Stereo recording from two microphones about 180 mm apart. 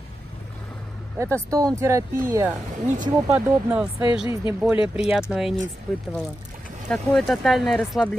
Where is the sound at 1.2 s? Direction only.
15° right (ahead or behind).